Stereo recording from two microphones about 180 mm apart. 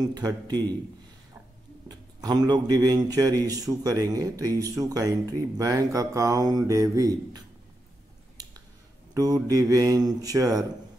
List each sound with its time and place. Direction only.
0.0 s speech: 20° right (ahead or behind)
1.9 s speech: 20° right (ahead or behind)
9.1 s speech: 20° right (ahead or behind)